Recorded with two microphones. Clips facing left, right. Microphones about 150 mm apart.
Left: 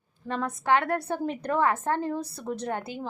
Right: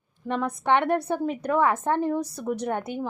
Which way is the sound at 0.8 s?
25° right (ahead or behind).